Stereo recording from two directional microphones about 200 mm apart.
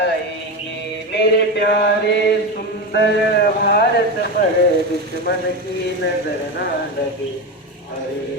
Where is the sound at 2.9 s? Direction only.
55° left (ahead or behind).